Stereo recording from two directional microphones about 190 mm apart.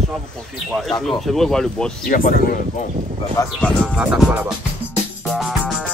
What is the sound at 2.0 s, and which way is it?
Speech, 50° left (ahead or behind).